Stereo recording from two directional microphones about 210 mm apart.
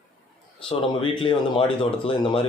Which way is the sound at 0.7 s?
25° left (ahead or behind).